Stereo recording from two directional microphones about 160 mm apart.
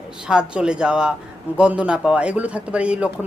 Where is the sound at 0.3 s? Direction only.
5° right (ahead or behind).